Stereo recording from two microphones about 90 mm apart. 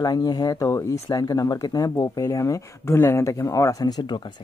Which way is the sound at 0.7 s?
35° left (ahead or behind).